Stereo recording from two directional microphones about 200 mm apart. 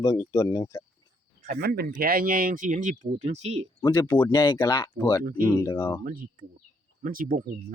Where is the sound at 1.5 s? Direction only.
50° right (ahead or behind); by 3.7 s 35° right (ahead or behind).